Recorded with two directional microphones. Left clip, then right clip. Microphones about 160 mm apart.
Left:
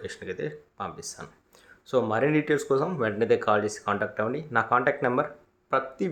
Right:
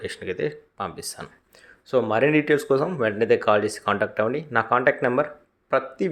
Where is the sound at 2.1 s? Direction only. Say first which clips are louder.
Right 7 dB; 15° right (ahead or behind).